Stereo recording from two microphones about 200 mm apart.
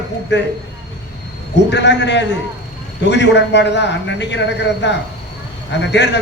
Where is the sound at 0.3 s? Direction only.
60° left (ahead or behind).